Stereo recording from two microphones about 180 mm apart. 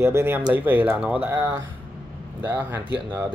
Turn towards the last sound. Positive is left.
turn(degrees=-15)  # may be behind; listen again after turning